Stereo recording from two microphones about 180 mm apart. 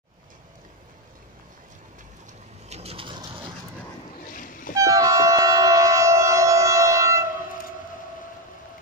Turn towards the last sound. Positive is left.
turn(degrees=-15)  # may be behind; listen again after turning